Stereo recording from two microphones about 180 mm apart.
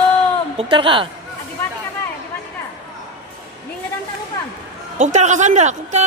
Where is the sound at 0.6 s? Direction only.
30° right (ahead or behind).